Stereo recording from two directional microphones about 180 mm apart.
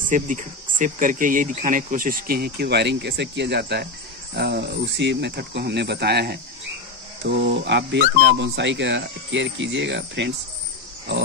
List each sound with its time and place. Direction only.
0.1 s speech: 45° right (ahead or behind); by 10.3 s 80° right